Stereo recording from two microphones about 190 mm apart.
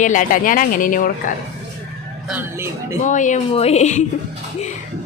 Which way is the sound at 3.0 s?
40° left (ahead or behind).